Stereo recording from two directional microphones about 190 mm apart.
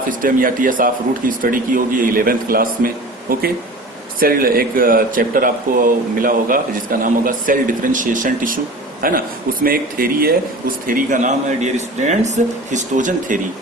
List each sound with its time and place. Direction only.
0.1 s speech: 45° right (ahead or behind)